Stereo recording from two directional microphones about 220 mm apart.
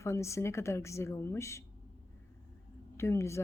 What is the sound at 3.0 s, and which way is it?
Speech, 10° left (ahead or behind).